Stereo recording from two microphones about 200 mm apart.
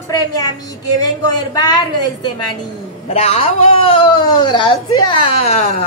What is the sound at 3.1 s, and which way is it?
Speech, 30° left (ahead or behind).